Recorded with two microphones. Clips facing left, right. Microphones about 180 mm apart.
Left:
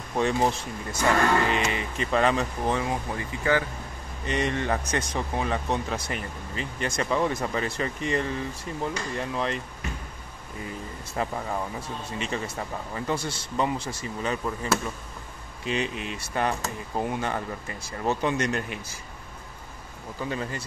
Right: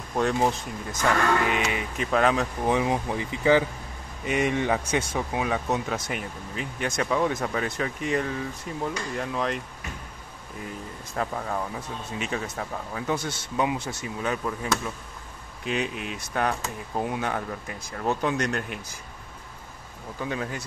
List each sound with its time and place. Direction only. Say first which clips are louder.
0.1 s speech: even; centre (ahead or behind)
2.7 s speech: right 7 dB; 15° right (ahead or behind); by 9.6 s centre (ahead or behind)
11.1 s speech: even; 5° left (ahead or behind)
20.2 s speech: even; centre (ahead or behind)